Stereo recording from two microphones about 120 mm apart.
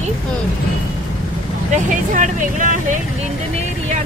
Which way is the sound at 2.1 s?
90° right.